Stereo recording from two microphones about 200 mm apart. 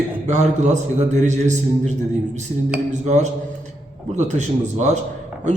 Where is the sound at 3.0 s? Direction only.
35° right (ahead or behind).